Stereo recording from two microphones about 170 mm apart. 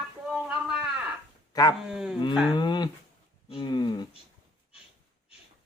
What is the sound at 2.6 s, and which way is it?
Speech, 25° left (ahead or behind).